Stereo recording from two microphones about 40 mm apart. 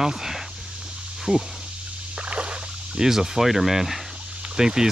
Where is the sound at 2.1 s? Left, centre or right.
Right.